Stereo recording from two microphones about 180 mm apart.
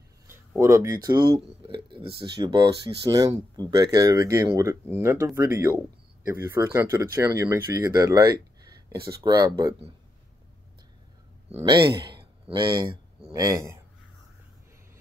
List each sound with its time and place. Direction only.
0.6 s speech: 15° right (ahead or behind)
1.7 s speech: 30° right (ahead or behind)
3.7 s speech: 20° right (ahead or behind)
11.6 s speech: 25° right (ahead or behind)
12.2 s a sound: 30° right (ahead or behind)
13.3 s speech: 20° right (ahead or behind)